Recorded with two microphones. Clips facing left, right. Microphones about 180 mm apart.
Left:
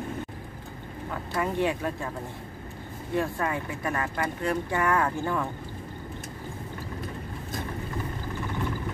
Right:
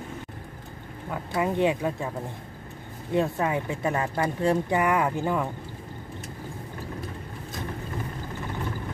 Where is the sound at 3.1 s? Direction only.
20° right (ahead or behind).